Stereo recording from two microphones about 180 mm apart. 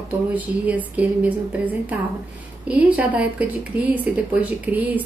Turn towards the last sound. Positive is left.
turn(degrees=-10)  # may be behind; listen again after turning